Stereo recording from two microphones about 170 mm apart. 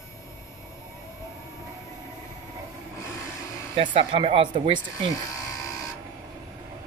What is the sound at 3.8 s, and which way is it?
Speech, 30° right (ahead or behind).